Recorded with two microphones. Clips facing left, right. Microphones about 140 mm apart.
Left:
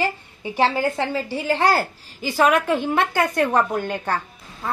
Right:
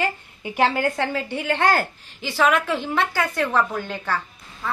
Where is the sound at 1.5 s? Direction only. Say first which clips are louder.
Left 1 dB; 35° left (ahead or behind); by 3.0 s 50° left (ahead or behind).